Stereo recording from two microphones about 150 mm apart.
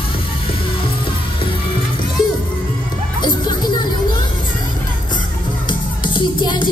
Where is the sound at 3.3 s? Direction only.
30° left (ahead or behind).